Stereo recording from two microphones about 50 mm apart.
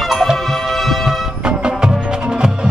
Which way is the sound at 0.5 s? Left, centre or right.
Centre.